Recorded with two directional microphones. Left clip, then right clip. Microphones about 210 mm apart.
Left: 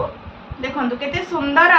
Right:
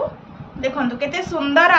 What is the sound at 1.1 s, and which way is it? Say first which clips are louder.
Speech: even; 50° right (ahead or behind).